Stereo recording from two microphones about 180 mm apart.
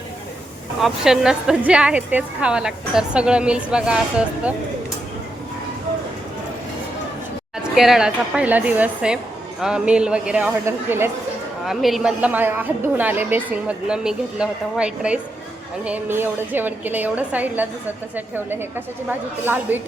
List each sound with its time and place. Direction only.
0.8 s speech: centre (ahead or behind)
7.6 s a woman's voice: centre (ahead or behind)
11.6 s a woman's voice: centre (ahead or behind)